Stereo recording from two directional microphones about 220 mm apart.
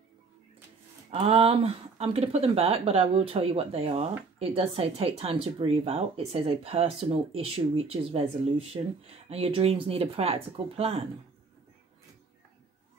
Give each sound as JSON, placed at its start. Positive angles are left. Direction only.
{"t": 1.1, "sound": "speech", "side_deg": -25}